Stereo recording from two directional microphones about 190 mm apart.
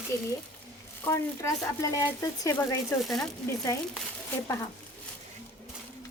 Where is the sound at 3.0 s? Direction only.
Centre (ahead or behind).